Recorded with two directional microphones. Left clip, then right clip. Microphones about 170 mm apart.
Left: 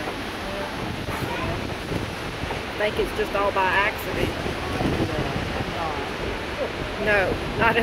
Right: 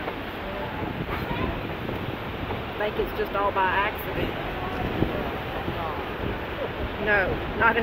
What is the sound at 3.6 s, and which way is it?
Speech, 10° left (ahead or behind).